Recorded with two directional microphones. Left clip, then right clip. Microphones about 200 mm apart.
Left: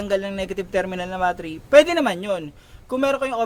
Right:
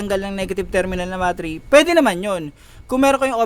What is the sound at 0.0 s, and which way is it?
Speech, 30° right (ahead or behind).